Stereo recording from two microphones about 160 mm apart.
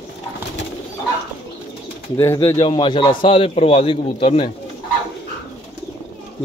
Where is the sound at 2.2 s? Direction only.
15° left (ahead or behind).